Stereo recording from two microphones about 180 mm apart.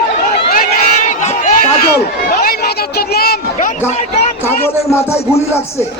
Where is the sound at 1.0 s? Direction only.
45° left (ahead or behind).